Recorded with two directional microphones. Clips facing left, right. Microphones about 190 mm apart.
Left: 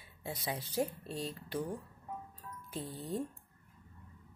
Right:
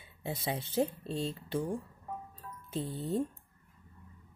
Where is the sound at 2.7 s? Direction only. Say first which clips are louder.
Right 5 dB; 25° right (ahead or behind).